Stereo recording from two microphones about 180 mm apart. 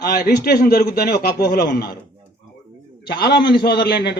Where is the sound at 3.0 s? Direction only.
60° left (ahead or behind).